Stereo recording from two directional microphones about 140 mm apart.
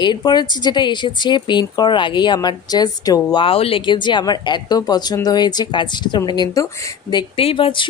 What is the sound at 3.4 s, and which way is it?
Speech, 40° left (ahead or behind).